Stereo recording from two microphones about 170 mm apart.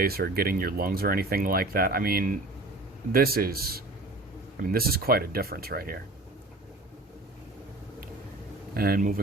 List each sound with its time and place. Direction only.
0.0 s speech: 60° right (ahead or behind)
8.7 s speech: 60° right (ahead or behind)